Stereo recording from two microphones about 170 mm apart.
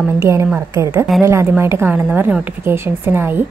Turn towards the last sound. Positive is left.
turn(degrees=-10)  # may be behind; listen again after turning